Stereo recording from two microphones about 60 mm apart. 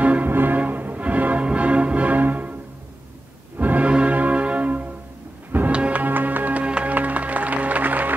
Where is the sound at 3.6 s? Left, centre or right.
Right.